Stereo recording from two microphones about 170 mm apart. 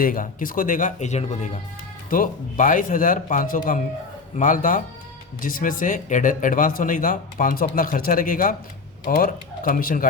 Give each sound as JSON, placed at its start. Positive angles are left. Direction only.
{"t": 0.0, "sound": "speech", "side_deg": 55}